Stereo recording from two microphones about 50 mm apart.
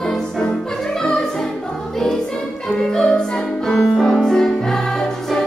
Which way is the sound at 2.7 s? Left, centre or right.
Centre.